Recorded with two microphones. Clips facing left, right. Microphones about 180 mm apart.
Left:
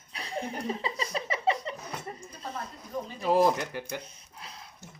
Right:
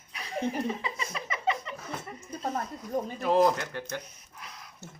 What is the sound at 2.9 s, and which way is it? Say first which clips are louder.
Speech: right 4 dB; 45° right (ahead or behind).